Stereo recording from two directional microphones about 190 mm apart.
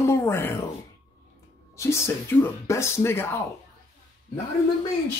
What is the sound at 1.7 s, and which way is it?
Speech, 15° left (ahead or behind).